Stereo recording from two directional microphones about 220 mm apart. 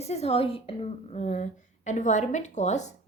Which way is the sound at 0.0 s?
30° left (ahead or behind).